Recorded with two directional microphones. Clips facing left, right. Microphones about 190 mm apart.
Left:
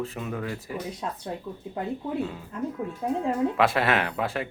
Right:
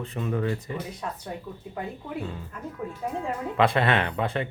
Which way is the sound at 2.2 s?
5° left (ahead or behind).